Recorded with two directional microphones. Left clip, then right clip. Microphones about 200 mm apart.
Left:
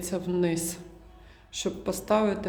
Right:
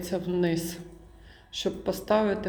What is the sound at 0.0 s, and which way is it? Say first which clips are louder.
A woman's voice: even; 15° left (ahead or behind).